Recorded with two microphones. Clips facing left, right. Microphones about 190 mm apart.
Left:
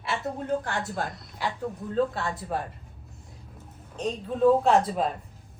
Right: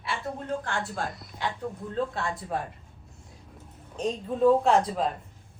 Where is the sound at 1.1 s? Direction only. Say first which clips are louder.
Left 1 dB; centre (ahead or behind).